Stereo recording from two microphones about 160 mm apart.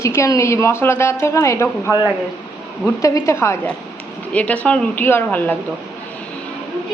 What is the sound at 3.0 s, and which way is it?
A woman's voice, 20° left (ahead or behind).